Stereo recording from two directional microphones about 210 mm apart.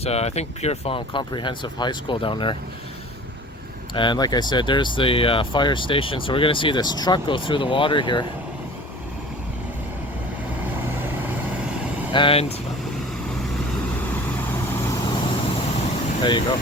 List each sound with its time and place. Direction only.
0.0 s speech: 30° left (ahead or behind)
3.9 s speech: 20° left (ahead or behind)
12.1 s speech: 25° left (ahead or behind)
14.8 s vehicle: 20° left (ahead or behind)
16.2 s speech: 20° left (ahead or behind)